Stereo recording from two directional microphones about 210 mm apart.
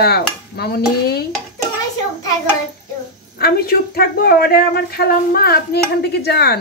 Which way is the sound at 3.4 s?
45° left (ahead or behind).